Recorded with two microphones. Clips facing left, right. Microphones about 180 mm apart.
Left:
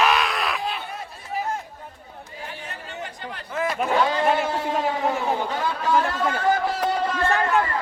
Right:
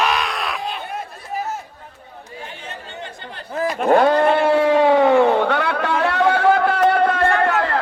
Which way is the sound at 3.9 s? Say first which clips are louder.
Right 8 dB; 55° right (ahead or behind).